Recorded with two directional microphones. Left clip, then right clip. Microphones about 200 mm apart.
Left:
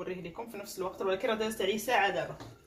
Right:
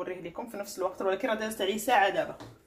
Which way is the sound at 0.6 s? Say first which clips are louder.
Right 4 dB; 35° right (ahead or behind).